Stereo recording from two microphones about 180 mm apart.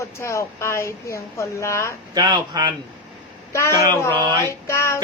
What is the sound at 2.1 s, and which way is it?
Mantra, 25° right (ahead or behind).